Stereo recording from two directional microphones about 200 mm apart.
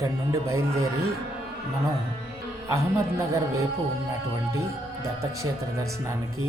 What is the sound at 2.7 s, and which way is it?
Speech, 15° right (ahead or behind).